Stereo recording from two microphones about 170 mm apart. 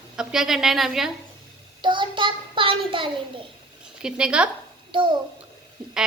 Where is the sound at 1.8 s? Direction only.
30° right (ahead or behind).